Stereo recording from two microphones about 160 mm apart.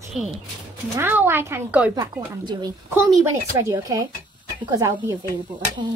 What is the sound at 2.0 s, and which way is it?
A woman's voice, 25° right (ahead or behind).